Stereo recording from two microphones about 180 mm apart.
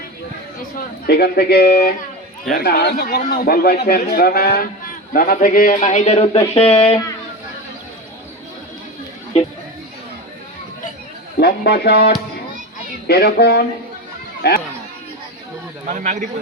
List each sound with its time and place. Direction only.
1.0 s a man's voice: 65° left (ahead or behind); by 7.0 s 35° left (ahead or behind)
11.3 s a man's voice: 65° left (ahead or behind)
15.9 s a man's voice: 40° right (ahead or behind)